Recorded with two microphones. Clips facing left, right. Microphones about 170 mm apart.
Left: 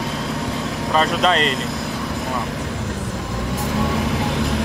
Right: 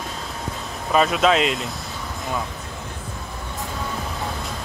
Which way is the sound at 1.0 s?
Centre (ahead or behind).